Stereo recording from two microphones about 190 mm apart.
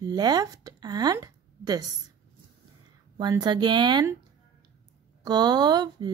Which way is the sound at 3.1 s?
20° right (ahead or behind).